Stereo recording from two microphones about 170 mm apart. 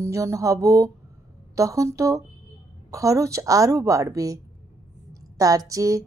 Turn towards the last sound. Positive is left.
turn(degrees=-20)  # may be behind; listen again after turning